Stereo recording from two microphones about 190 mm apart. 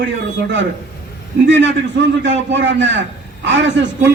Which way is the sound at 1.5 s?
70° right (ahead or behind).